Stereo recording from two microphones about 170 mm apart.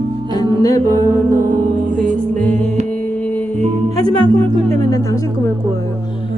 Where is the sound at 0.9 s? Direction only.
20° right (ahead or behind).